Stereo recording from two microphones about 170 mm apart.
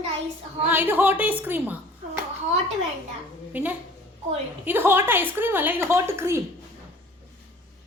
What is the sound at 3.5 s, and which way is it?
A woman's voice, 10° right (ahead or behind).